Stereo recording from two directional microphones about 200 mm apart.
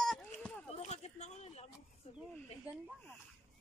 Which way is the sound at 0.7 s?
35° left (ahead or behind).